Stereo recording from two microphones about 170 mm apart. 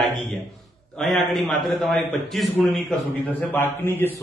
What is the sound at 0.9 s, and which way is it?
A man's voice, centre (ahead or behind).